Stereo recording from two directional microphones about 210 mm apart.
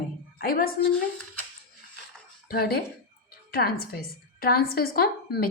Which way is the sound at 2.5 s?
45° left (ahead or behind).